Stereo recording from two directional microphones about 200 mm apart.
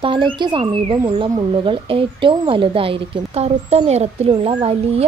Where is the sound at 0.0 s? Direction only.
25° right (ahead or behind).